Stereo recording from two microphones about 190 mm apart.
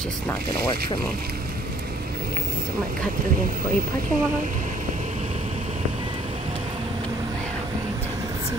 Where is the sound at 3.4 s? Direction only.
50° right (ahead or behind).